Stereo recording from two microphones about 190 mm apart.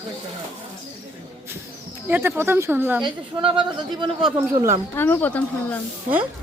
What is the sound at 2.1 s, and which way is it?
Speech, 10° right (ahead or behind).